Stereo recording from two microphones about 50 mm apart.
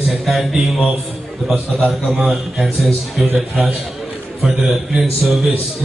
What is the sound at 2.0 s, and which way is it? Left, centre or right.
A man's voice, centre.